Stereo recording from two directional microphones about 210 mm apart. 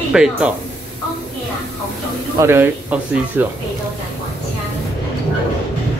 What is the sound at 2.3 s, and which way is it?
Speech, 10° right (ahead or behind).